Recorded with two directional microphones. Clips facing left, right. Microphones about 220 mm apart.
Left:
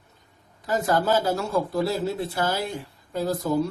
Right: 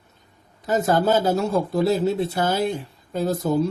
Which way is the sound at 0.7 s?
20° right (ahead or behind).